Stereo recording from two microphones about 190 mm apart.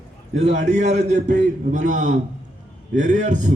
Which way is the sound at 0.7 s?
35° right (ahead or behind).